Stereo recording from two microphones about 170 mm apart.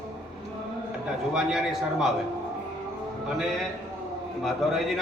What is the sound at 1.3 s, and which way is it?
Speech, 5° right (ahead or behind).